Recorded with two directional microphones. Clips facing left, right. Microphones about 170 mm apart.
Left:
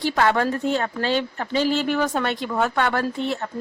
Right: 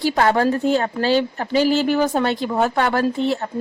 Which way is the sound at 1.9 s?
35° right (ahead or behind).